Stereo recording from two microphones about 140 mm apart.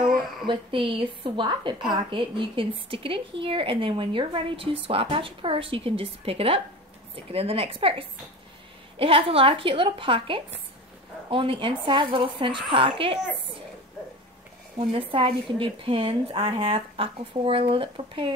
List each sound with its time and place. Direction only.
0.5 s a woman's voice: 40° right (ahead or behind)
8.9 s a woman's voice: 40° right (ahead or behind)
14.8 s a woman's voice: 40° right (ahead or behind)